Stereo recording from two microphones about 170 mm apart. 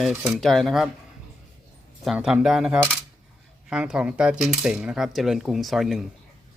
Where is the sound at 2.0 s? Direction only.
5° right (ahead or behind).